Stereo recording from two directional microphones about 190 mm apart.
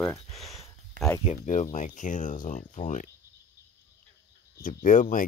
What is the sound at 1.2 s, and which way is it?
Speech, 35° left (ahead or behind).